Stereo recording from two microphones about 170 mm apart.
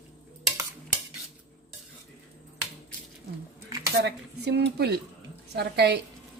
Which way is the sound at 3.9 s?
80° right.